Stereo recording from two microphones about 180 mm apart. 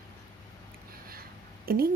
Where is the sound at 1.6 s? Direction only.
55° right (ahead or behind).